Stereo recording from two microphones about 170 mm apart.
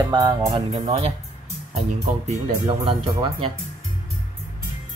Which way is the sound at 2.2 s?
30° right (ahead or behind).